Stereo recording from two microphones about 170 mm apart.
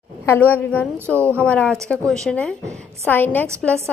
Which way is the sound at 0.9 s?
15° right (ahead or behind).